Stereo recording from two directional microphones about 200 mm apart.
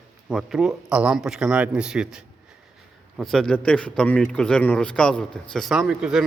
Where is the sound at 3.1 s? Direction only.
Centre (ahead or behind).